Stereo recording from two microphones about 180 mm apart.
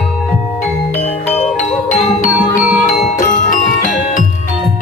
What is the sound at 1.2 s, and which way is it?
Music, 40° left (ahead or behind).